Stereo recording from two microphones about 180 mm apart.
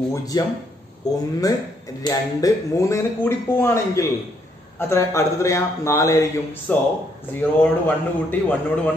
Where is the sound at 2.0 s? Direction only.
20° left (ahead or behind).